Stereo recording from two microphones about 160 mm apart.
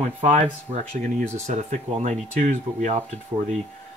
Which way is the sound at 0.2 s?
45° right (ahead or behind).